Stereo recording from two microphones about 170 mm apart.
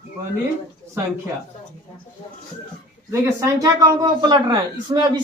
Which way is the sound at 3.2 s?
20° right (ahead or behind).